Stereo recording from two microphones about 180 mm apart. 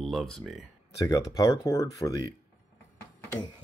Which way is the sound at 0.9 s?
20° left (ahead or behind).